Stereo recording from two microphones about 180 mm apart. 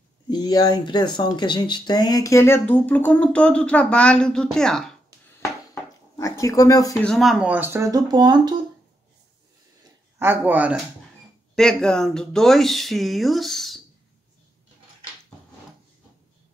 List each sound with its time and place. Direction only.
0.3 s speech: 20° left (ahead or behind); by 4.9 s 5° left (ahead or behind)
6.1 s speech: 20° left (ahead or behind)
7.0 s speech: centre (ahead or behind); by 8.5 s 25° right (ahead or behind)
10.1 s speech: 10° right (ahead or behind)
11.5 s speech: 5° left (ahead or behind)